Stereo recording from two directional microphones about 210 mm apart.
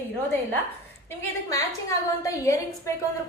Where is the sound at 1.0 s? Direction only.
15° left (ahead or behind).